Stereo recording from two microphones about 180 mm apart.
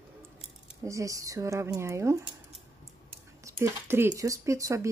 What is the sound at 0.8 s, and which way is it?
Speech, 20° right (ahead or behind).